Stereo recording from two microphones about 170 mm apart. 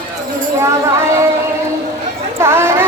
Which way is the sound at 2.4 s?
15° right (ahead or behind).